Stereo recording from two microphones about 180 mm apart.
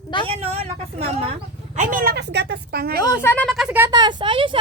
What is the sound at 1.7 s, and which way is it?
Speech, 45° right (ahead or behind).